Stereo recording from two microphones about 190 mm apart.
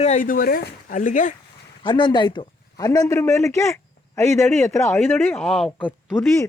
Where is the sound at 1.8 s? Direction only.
25° left (ahead or behind); by 6.1 s centre (ahead or behind).